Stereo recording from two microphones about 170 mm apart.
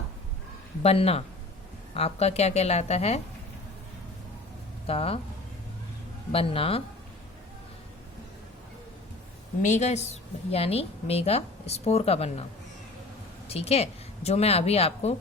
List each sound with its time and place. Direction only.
0.8 s a woman's voice: 35° left (ahead or behind)
4.9 s a woman's voice: 35° left (ahead or behind)
6.3 s a woman's voice: 35° left (ahead or behind)
9.6 s a woman's voice: 45° left (ahead or behind)
13.5 s a woman's voice: 40° left (ahead or behind)